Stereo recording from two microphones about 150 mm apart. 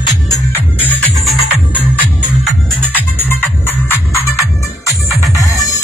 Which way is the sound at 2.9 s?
10° left (ahead or behind).